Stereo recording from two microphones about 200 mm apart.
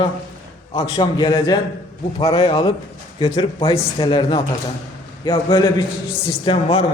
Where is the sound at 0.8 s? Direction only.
25° left (ahead or behind).